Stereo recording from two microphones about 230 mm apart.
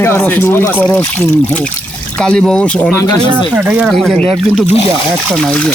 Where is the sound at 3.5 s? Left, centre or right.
Centre.